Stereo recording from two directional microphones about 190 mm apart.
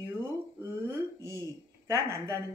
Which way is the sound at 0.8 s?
15° right (ahead or behind).